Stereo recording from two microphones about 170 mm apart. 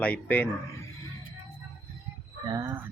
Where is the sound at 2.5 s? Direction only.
15° right (ahead or behind).